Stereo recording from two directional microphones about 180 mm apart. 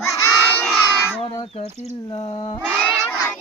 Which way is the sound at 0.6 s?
10° left (ahead or behind).